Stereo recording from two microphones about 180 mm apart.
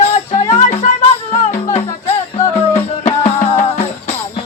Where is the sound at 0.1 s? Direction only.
35° left (ahead or behind).